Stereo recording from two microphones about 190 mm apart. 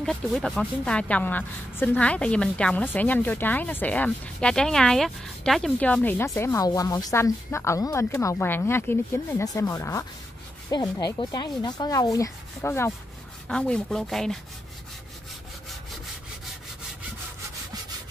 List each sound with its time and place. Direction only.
0.0 s a woman's voice: centre (ahead or behind)